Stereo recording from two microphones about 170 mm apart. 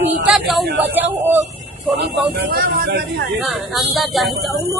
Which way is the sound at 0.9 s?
10° right (ahead or behind).